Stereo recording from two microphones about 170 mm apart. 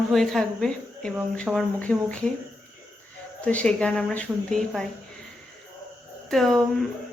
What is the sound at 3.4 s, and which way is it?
A woman's voice, 5° left (ahead or behind).